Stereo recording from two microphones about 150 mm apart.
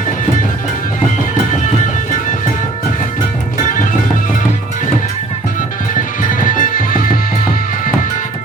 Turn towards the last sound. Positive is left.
turn(degrees=65)  # may be behind; listen again after turning